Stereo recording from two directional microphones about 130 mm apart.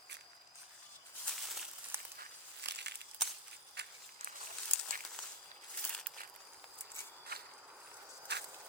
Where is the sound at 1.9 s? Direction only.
15° right (ahead or behind).